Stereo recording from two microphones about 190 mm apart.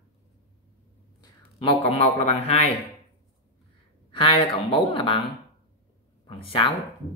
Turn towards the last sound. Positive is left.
turn(degrees=30)  # may be behind; listen again after turning